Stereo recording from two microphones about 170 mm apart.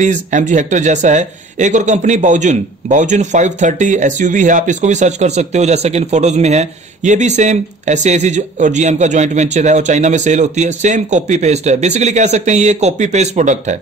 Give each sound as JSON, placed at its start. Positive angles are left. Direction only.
{"t": 0.0, "sound": "speech", "side_deg": -45}